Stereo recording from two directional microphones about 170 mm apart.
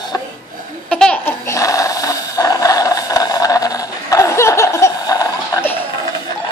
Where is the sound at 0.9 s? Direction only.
5° left (ahead or behind).